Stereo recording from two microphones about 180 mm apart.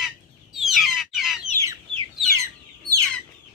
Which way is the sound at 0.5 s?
Centre (ahead or behind).